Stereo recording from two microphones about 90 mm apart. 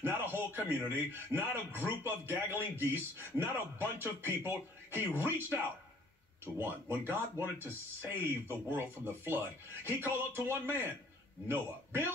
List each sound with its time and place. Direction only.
0.0 s a man's voice: 25° right (ahead or behind)